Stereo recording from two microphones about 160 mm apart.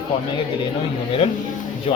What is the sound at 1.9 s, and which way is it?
Speech, 35° left (ahead or behind).